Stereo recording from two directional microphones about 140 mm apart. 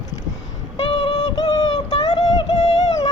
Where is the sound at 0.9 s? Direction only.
35° left (ahead or behind).